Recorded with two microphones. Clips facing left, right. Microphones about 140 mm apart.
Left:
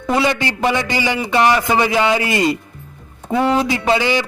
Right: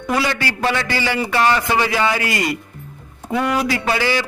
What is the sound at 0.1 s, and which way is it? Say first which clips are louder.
A man's voice: left 3 dB; 20° left (ahead or behind).